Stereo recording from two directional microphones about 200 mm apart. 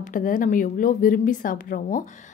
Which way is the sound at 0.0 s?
40° left (ahead or behind).